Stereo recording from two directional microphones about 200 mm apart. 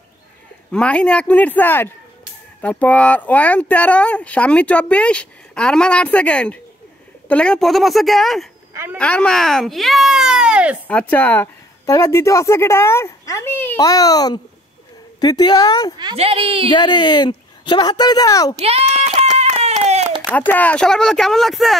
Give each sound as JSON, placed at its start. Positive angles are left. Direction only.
{"t": 0.7, "sound": "a child's voice", "side_deg": 5}
{"t": 10.9, "sound": "speech", "side_deg": 10}
{"t": 16.0, "sound": "a woman's voice", "side_deg": -25}
{"t": 16.7, "sound": "speech", "side_deg": 20}
{"t": 18.6, "sound": "a sound", "side_deg": -30}
{"t": 20.3, "sound": "speech", "side_deg": 10}